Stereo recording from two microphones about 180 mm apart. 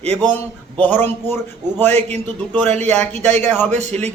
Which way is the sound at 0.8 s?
10° left (ahead or behind).